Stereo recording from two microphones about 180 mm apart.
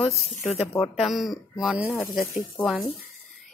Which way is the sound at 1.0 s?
Centre (ahead or behind).